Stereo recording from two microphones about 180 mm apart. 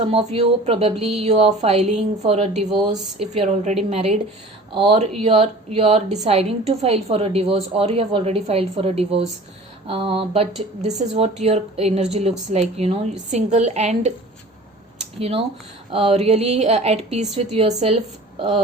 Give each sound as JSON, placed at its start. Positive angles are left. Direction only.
{"t": 0.0, "sound": "a woman's voice", "side_deg": -35}
{"t": 15.2, "sound": "a woman's voice", "side_deg": -35}